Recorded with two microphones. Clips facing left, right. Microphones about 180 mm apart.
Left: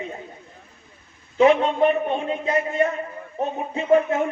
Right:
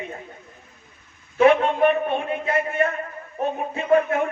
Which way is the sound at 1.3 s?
20° left (ahead or behind).